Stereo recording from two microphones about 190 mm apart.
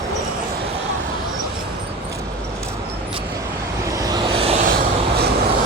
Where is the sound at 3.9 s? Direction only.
20° right (ahead or behind).